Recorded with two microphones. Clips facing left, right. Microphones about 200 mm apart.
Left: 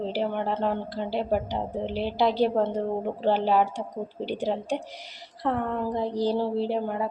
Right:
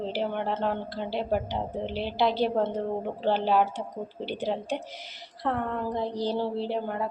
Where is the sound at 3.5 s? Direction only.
5° left (ahead or behind).